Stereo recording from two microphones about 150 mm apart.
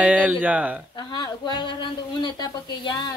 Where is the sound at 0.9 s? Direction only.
30° left (ahead or behind).